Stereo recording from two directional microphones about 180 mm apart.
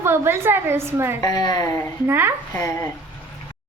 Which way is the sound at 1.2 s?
20° left (ahead or behind).